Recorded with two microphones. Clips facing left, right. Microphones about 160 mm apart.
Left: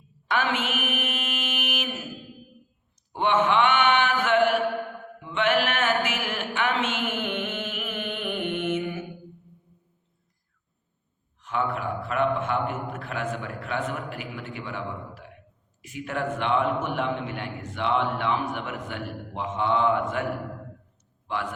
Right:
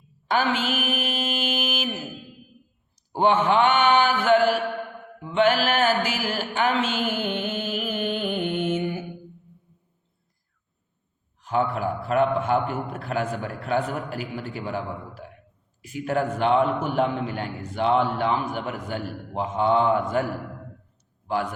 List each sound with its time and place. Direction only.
0.3 s mantra: 35° right (ahead or behind)
3.1 s mantra: 35° right (ahead or behind)
5.2 s a sound: 35° right (ahead or behind)
11.4 s a man's voice: 35° right (ahead or behind)